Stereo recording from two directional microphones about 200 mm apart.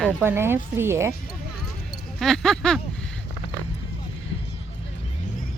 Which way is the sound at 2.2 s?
Centre (ahead or behind).